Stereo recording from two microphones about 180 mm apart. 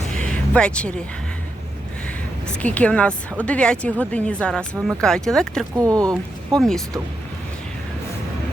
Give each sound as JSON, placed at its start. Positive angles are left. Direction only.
{"t": 0.1, "sound": "music", "side_deg": 5}
{"t": 2.6, "sound": "a woman's voice", "side_deg": 5}
{"t": 5.7, "sound": "speech", "side_deg": -20}